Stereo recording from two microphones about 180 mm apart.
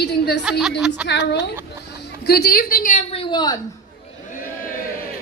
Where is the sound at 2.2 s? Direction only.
60° left (ahead or behind); by 3.5 s 25° left (ahead or behind).